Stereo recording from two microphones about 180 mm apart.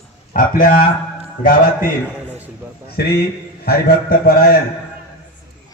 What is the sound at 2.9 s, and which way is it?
A man's voice, 60° left (ahead or behind).